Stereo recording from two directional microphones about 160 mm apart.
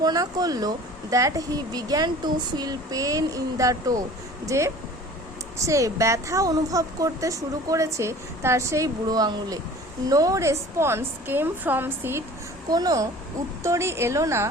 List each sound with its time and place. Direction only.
0.0 s a woman's voice: 25° right (ahead or behind)